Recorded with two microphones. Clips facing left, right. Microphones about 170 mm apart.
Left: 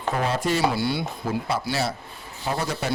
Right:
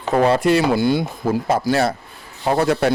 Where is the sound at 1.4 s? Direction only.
50° right (ahead or behind).